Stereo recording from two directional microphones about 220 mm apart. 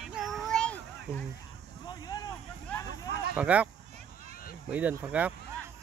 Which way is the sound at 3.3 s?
5° right (ahead or behind).